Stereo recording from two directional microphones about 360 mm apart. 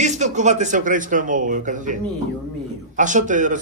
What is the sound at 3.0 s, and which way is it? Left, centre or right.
Speech, right.